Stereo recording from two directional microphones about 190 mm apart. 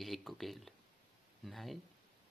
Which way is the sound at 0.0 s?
Centre (ahead or behind).